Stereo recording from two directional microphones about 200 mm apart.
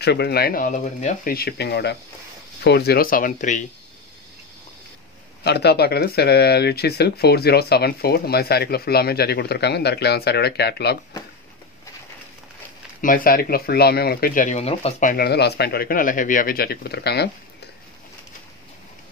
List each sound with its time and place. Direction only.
0.0 s speech: 55° left (ahead or behind); by 3.6 s 40° left (ahead or behind)
5.4 s speech: 55° left (ahead or behind)
13.0 s speech: 45° left (ahead or behind)
15.2 s speech: 55° left (ahead or behind)